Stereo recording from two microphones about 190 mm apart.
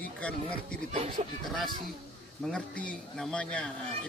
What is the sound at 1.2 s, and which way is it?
Speech, 35° right (ahead or behind).